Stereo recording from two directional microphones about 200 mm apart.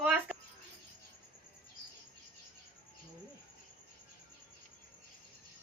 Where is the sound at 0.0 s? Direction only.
5° right (ahead or behind).